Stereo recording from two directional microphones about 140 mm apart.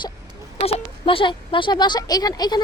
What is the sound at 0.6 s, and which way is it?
Speech, 40° left (ahead or behind).